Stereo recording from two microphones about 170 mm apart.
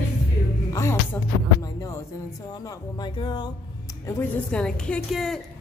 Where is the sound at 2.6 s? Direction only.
25° left (ahead or behind).